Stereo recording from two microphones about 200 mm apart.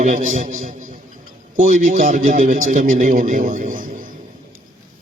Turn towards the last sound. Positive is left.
turn(degrees=-40)  # may be behind; listen again after turning